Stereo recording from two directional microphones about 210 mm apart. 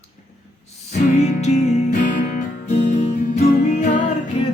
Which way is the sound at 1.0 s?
30° left (ahead or behind).